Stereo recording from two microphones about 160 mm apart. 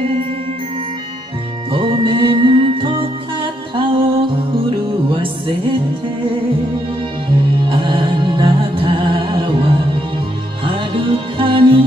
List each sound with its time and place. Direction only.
1.7 s music: 30° right (ahead or behind)
7.6 s music: 30° right (ahead or behind)